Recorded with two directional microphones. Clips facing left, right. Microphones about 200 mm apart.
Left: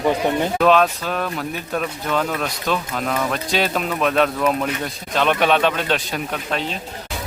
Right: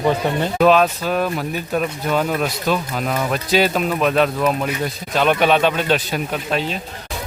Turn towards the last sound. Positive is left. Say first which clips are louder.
# right 3 dB
turn(degrees=-5)  # may be behind; listen again after turning